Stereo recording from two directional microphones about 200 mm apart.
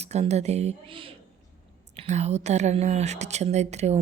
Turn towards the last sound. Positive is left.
turn(degrees=-35)  # may be behind; listen again after turning